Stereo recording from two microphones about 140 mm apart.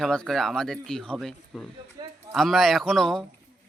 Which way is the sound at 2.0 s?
30° right (ahead or behind).